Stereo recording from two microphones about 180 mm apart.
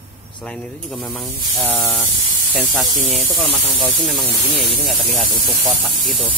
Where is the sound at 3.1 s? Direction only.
Centre (ahead or behind).